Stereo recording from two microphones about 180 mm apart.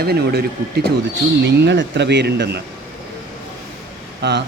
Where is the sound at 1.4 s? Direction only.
70° right (ahead or behind).